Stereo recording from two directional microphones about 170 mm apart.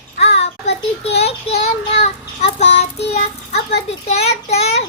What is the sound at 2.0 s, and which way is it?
Child singing, 40° left (ahead or behind).